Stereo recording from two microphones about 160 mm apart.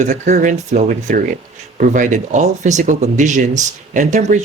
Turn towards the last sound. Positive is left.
turn(degrees=-50)  # may be behind; listen again after turning